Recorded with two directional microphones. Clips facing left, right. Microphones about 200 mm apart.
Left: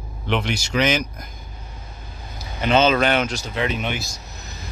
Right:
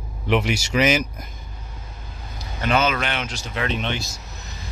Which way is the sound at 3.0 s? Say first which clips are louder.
Left 8 dB; 40° left (ahead or behind).